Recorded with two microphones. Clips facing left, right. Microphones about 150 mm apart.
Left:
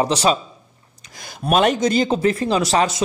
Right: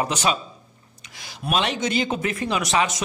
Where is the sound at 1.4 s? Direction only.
45° left (ahead or behind); by 3.0 s 30° left (ahead or behind).